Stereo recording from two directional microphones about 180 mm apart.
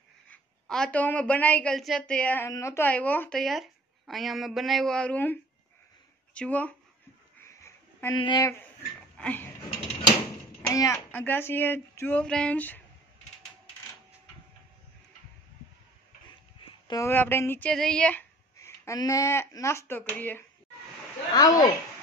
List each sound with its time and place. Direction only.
0.3 s a woman's voice: 5° left (ahead or behind)
7.4 s a sound: 15° left (ahead or behind)
8.2 s speech: 20° left (ahead or behind)
9.2 s a sound: 10° left (ahead or behind)
10.7 s speech: 15° left (ahead or behind)
16.8 s speech: 20° left (ahead or behind)
18.6 s speech: 15° left (ahead or behind)
21.3 s speech: 20° left (ahead or behind)